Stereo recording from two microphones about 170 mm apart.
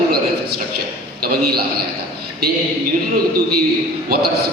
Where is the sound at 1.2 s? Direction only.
65° right (ahead or behind).